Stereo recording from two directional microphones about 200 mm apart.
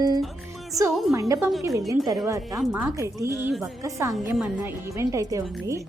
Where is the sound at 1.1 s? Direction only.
15° right (ahead or behind).